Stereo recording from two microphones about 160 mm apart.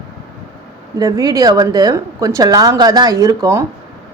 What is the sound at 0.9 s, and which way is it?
Speech, 20° right (ahead or behind).